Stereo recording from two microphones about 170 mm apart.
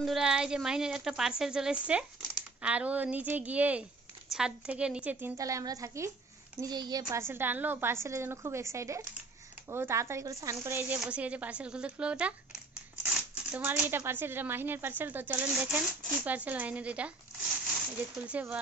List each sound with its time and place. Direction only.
0.0 s a woman's voice: centre (ahead or behind)
18.2 s speech: 5° right (ahead or behind)